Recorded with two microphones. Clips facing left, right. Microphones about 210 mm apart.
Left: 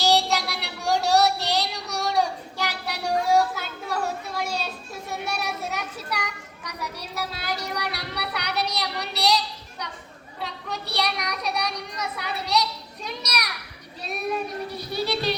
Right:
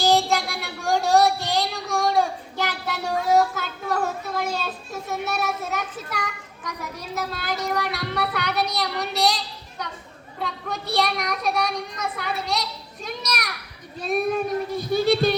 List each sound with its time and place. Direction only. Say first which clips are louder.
0.0 s child singing: right 2 dB; 50° right (ahead or behind)
3.6 s a sound: right 3 dB; 45° right (ahead or behind)
5.2 s a child's voice: right 2 dB; 50° right (ahead or behind)